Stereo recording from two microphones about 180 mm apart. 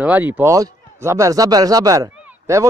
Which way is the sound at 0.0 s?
10° right (ahead or behind).